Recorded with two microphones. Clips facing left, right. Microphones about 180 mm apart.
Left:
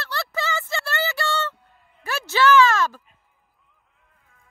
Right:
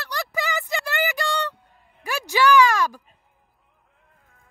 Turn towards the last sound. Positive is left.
turn(degrees=-15)  # may be behind; listen again after turning